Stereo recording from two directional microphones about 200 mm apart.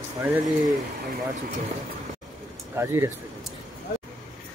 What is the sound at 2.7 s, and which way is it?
Speech, 15° right (ahead or behind).